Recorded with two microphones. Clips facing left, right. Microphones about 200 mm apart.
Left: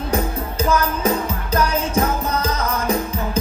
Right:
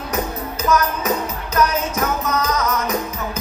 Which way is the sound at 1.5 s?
30° left (ahead or behind).